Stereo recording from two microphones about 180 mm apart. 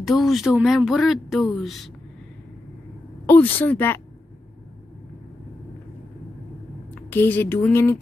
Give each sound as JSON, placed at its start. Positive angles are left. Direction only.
{"t": 0.0, "sound": "speech", "side_deg": 0}
{"t": 3.3, "sound": "speech", "side_deg": 10}
{"t": 7.0, "sound": "speech", "side_deg": 10}